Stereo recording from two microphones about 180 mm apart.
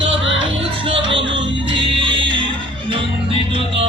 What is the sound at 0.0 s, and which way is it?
Music, 90° right.